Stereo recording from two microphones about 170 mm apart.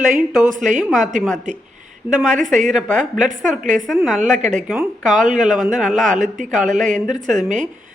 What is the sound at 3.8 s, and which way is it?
Speech, centre (ahead or behind).